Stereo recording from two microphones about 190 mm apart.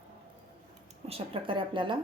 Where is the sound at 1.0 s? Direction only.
30° right (ahead or behind).